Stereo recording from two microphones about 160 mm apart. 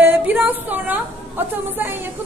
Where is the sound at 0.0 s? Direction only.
10° right (ahead or behind).